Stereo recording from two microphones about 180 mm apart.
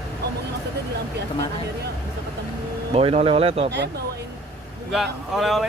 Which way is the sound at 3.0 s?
35° right (ahead or behind).